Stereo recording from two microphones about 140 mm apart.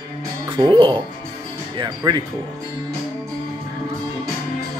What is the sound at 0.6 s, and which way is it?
Speech, 35° right (ahead or behind).